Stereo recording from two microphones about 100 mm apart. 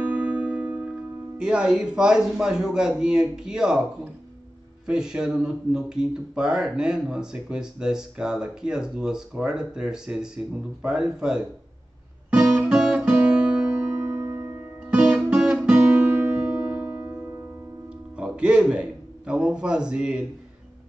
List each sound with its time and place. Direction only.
0.0 s music: 15° right (ahead or behind)
1.4 s speech: 10° right (ahead or behind)
12.3 s guitar: 5° right (ahead or behind)
14.0 s music: 25° right (ahead or behind)
14.9 s guitar: 10° right (ahead or behind)
18.1 s music: 10° right (ahead or behind)